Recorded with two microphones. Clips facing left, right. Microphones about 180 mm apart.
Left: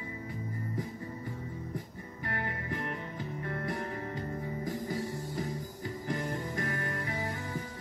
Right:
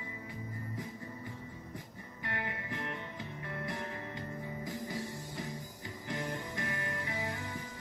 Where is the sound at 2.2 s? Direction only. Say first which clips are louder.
Left 3 dB; 40° left (ahead or behind).